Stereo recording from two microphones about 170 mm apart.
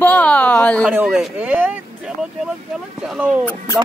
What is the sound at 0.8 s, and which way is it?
Speech, 5° right (ahead or behind).